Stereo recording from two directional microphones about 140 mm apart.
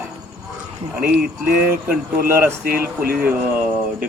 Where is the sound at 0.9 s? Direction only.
10° right (ahead or behind).